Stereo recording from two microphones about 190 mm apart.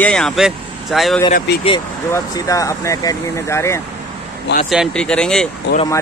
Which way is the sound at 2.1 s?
15° left (ahead or behind).